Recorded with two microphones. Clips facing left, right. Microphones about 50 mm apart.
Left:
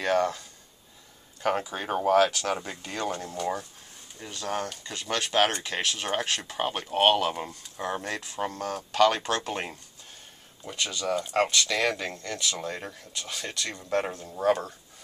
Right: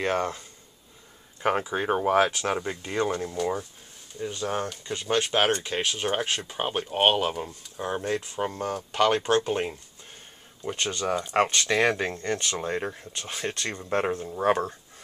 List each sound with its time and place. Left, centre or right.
0.0 s speech: right
1.4 s speech: right
10.8 s speech: right
11.5 s speech: right